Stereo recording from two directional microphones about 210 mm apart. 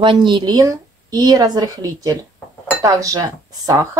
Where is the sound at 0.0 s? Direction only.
20° right (ahead or behind).